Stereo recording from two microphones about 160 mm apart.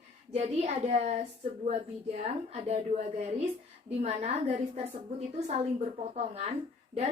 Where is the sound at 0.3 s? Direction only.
45° right (ahead or behind).